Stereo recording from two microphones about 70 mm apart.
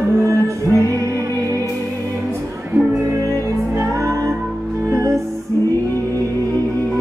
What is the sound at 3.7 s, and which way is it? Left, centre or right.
Music, right.